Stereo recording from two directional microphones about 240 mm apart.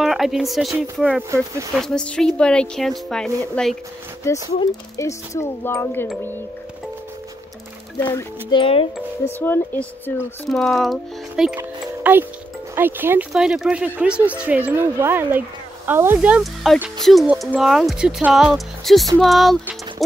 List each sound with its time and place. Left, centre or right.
0.0 s speech: centre
1.3 s speech: centre
1.8 s speech: centre
8.0 s speech: centre
9.2 s speech: centre